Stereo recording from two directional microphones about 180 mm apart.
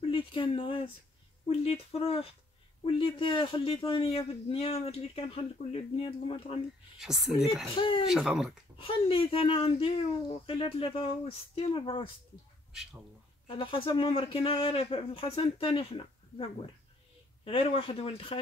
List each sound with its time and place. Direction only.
0.1 s speech: 30° left (ahead or behind)
1.5 s a sound: 30° left (ahead or behind)
2.8 s speech: 30° left (ahead or behind)
7.0 s a woman's voice: centre (ahead or behind)
7.7 s speech: 25° left (ahead or behind)
8.1 s a woman's voice: 5° right (ahead or behind)
8.7 s speech: 30° left (ahead or behind)
13.5 s speech: 30° left (ahead or behind)
17.5 s speech: 30° left (ahead or behind)